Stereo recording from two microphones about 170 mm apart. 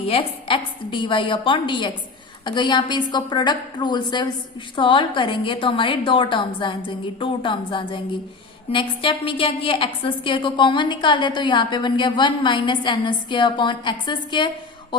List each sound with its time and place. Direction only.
0.1 s a woman's voice: 30° left (ahead or behind)